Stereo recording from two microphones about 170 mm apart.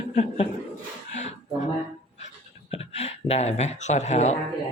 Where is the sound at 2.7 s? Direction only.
40° left (ahead or behind).